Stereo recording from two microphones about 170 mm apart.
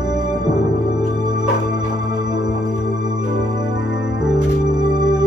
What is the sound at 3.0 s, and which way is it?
Music, 25° right (ahead or behind).